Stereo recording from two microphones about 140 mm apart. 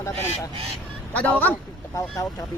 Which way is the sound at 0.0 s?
20° left (ahead or behind).